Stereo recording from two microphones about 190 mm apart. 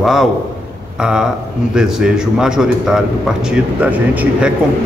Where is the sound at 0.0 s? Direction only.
Centre (ahead or behind).